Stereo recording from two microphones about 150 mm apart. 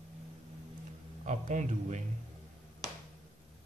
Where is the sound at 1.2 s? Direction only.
55° right (ahead or behind).